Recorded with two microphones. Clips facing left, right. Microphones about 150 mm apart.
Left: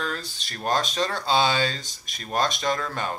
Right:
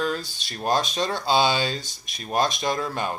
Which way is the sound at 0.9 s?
20° right (ahead or behind).